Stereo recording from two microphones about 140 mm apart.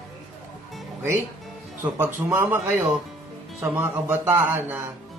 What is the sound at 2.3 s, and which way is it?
Speech, 15° right (ahead or behind).